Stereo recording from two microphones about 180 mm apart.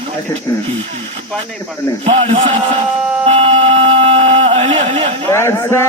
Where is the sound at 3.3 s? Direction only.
35° right (ahead or behind).